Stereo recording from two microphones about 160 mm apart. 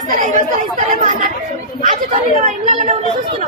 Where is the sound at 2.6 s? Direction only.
40° right (ahead or behind).